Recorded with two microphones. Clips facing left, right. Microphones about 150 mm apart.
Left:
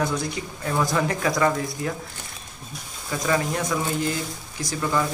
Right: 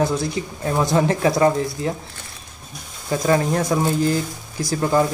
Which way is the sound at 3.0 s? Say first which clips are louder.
Right 5 dB; 35° right (ahead or behind).